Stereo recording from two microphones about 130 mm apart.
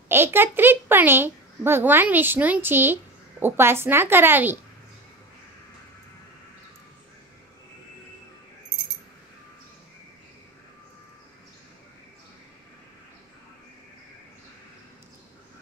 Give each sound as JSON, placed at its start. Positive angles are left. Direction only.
{"t": 0.1, "sound": "a child's voice", "side_deg": -15}